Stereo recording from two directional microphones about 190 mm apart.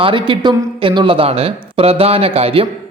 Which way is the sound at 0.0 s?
25° right (ahead or behind).